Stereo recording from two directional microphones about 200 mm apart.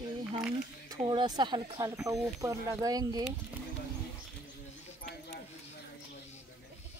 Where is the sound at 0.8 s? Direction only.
20° right (ahead or behind).